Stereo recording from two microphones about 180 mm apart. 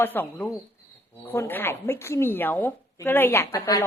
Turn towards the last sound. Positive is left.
turn(degrees=15)  # may be behind; listen again after turning